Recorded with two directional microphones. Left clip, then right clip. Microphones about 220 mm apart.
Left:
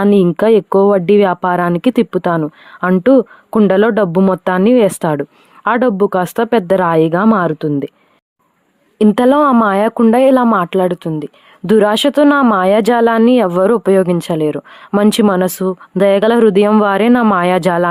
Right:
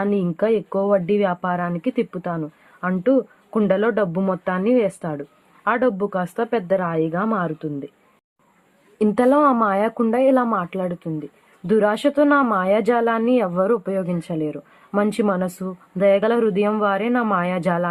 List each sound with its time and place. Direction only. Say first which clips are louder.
0.0 s speech: left 10 dB; 50° left (ahead or behind)
9.0 s speech: left 6 dB; 40° left (ahead or behind)